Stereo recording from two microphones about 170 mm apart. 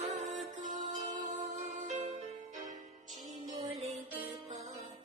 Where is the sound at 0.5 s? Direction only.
45° right (ahead or behind).